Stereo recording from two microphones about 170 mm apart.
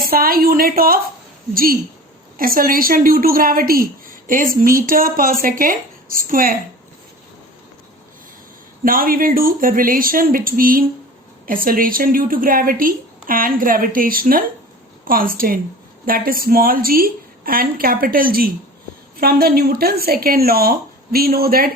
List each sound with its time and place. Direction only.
0.0 s a woman's voice: 60° right (ahead or behind)
8.8 s a woman's voice: 55° right (ahead or behind)